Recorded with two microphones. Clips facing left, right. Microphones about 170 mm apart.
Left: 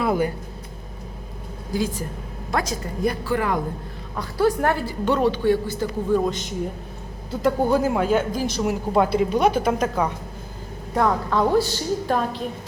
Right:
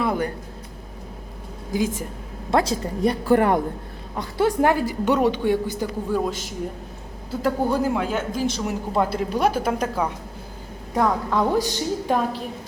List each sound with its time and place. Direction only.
0.0 s a sound: 5° left (ahead or behind)
1.7 s speech: 20° right (ahead or behind)
3.2 s a man's voice: 50° right (ahead or behind)
4.1 s a woman's voice: 25° right (ahead or behind); by 6.5 s 5° right (ahead or behind)
7.7 s a woman's voice: 5° left (ahead or behind); by 12.4 s 15° right (ahead or behind)